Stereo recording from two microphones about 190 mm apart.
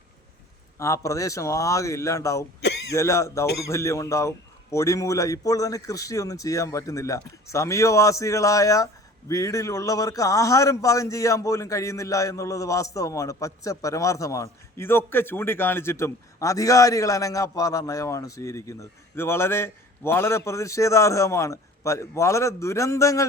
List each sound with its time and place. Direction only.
0.8 s a man's voice: 15° left (ahead or behind)
2.6 s throat clearing: 60° left (ahead or behind)
2.9 s a man's voice: 15° left (ahead or behind)